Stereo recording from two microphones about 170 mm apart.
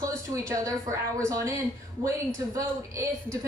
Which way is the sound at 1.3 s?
20° right (ahead or behind).